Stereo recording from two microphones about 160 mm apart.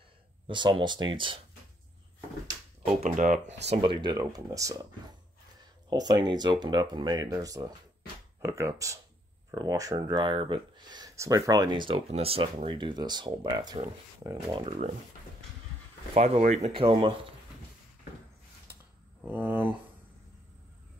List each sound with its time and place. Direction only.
0.5 s speech: 30° right (ahead or behind)
2.8 s speech: 45° right (ahead or behind)
3.7 s speech: 30° right (ahead or behind)
5.9 s speech: 25° right (ahead or behind)
16.2 s speech: 45° right (ahead or behind)
19.2 s speech: 10° right (ahead or behind)